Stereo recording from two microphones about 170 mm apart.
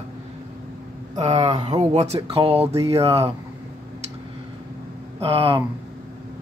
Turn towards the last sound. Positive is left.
turn(degrees=-30)  # may be behind; listen again after turning